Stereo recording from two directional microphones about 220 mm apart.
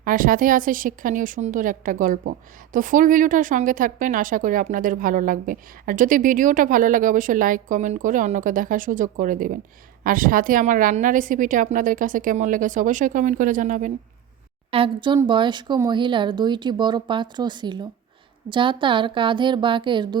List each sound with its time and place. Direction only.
0.0 s a woman's voice: 40° right (ahead or behind)
14.7 s speech: 25° right (ahead or behind)